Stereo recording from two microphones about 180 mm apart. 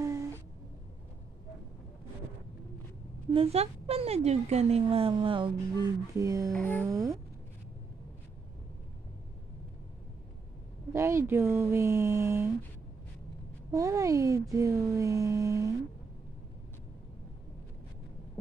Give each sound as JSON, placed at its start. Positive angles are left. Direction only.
{"t": 3.3, "sound": "speech", "side_deg": -35}
{"t": 6.5, "sound": "speech", "side_deg": 10}
{"t": 6.9, "sound": "speech", "side_deg": -20}
{"t": 10.9, "sound": "speech", "side_deg": -15}
{"t": 13.7, "sound": "speech", "side_deg": -15}